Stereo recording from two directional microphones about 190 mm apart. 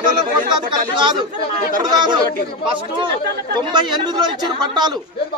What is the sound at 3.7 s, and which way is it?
Speech, 20° right (ahead or behind).